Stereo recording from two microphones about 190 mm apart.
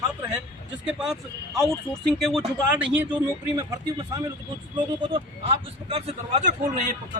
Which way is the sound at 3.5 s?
20° right (ahead or behind).